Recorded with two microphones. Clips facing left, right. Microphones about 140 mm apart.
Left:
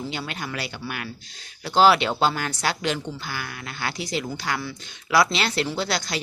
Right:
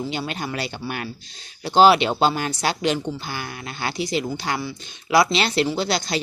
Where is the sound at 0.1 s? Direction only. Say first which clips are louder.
Right 4 dB; 25° right (ahead or behind).